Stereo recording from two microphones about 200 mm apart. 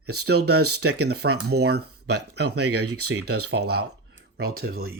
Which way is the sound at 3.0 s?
90° right.